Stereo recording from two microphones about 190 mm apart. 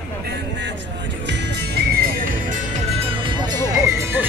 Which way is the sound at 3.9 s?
15° right (ahead or behind).